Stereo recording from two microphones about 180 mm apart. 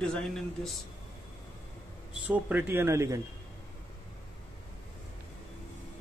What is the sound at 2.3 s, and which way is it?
Speech, 10° right (ahead or behind).